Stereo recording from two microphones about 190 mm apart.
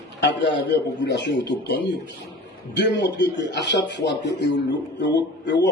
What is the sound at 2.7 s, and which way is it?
A man's voice, 65° left (ahead or behind).